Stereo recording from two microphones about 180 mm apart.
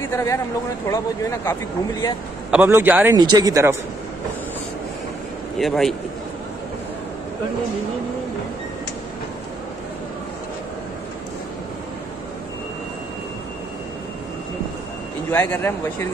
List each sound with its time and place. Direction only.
0.1 s speech: 15° left (ahead or behind)
2.5 s a man's voice: 10° right (ahead or behind)
3.2 s speech: 20° right (ahead or behind)
5.6 s a man's voice: centre (ahead or behind)
15.3 s speech: 10° left (ahead or behind)